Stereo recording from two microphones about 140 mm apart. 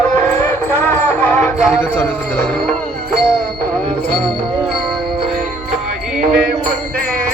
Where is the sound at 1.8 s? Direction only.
10° left (ahead or behind).